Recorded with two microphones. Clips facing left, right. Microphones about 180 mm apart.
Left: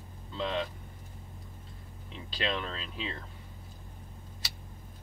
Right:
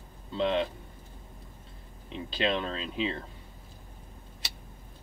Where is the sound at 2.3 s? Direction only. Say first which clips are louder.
Right 4 dB; 25° right (ahead or behind).